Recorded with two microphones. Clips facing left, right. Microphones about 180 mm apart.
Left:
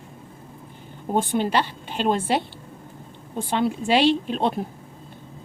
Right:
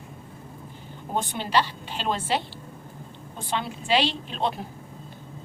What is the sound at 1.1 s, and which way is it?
A woman's voice, 50° left (ahead or behind).